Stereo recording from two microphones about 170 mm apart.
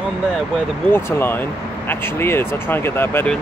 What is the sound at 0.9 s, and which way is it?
Speech, 15° left (ahead or behind).